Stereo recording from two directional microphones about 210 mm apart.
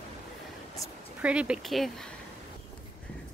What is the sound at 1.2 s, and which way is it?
Speech, 5° right (ahead or behind).